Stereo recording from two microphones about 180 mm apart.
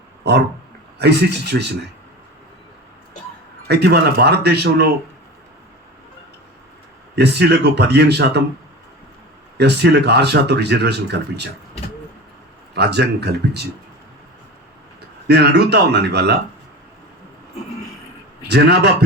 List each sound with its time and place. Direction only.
0.9 s speech: 70° right (ahead or behind)
3.7 s speech: 65° right (ahead or behind)
7.2 s speech: 70° right (ahead or behind)
9.6 s speech: 70° right (ahead or behind)
12.7 s speech: 65° right (ahead or behind)
15.3 s speech: 65° right (ahead or behind)
18.4 s speech: 70° right (ahead or behind)